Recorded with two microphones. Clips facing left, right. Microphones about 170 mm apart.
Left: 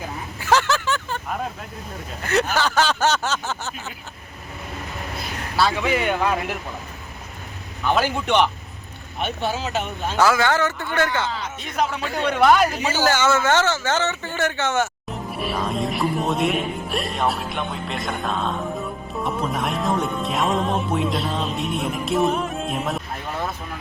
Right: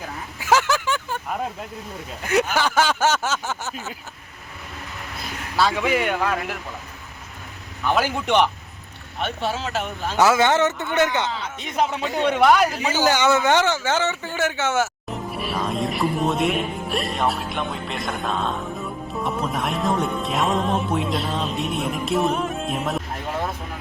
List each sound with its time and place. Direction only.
0.3 s a sound: 10° right (ahead or behind)
2.2 s speech: 10° right (ahead or behind)
5.7 s speech: 10° right (ahead or behind)
7.9 s speech: 5° right (ahead or behind)
9.2 s speech: 5° left (ahead or behind)
10.2 s speech: 20° right (ahead or behind)
12.4 s speech: 5° right (ahead or behind)